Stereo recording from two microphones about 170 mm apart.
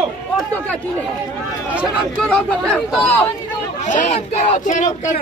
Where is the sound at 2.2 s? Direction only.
5° left (ahead or behind).